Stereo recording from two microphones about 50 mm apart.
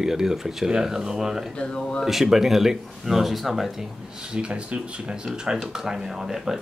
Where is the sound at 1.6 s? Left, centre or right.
Centre.